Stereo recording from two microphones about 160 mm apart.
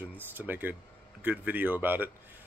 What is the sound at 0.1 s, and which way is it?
Speech, 10° right (ahead or behind).